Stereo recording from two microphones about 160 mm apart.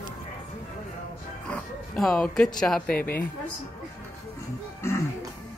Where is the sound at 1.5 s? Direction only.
5° left (ahead or behind).